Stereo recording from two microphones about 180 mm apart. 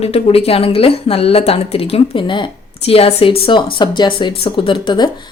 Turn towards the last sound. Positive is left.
turn(degrees=25)  # may be behind; listen again after turning